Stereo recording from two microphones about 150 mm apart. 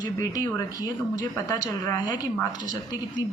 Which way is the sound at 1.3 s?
25° left (ahead or behind).